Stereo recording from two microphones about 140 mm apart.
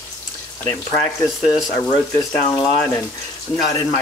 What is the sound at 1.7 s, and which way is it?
Speech, 25° left (ahead or behind).